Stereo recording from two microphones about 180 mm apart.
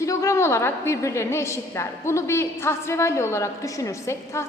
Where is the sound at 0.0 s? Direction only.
15° left (ahead or behind).